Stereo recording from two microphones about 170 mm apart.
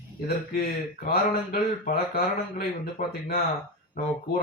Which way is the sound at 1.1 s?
65° left (ahead or behind).